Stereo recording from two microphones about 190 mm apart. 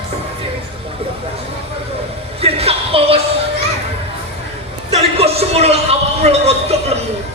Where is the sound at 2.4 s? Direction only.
30° right (ahead or behind).